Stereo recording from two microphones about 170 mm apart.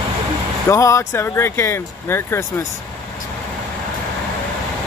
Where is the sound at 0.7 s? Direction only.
15° left (ahead or behind).